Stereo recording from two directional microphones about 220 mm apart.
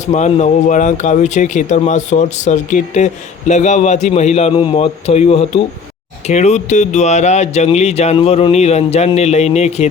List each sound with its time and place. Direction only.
0.1 s speech: 30° left (ahead or behind)